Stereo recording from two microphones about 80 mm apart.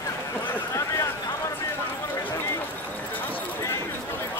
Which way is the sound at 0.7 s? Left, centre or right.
Left.